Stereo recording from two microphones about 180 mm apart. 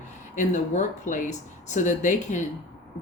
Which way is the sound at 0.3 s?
45° left (ahead or behind).